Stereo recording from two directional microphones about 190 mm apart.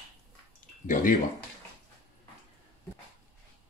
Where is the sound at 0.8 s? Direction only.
45° left (ahead or behind).